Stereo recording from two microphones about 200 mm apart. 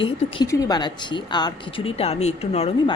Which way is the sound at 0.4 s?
20° left (ahead or behind).